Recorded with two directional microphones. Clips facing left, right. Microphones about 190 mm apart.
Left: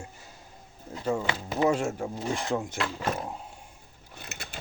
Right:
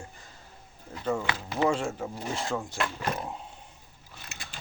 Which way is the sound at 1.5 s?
10° left (ahead or behind).